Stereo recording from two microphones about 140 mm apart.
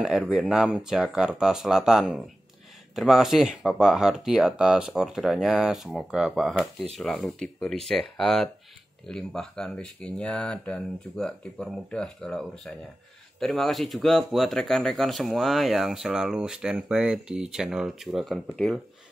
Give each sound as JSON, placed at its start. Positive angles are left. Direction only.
{"t": 0.0, "sound": "speech", "side_deg": -5}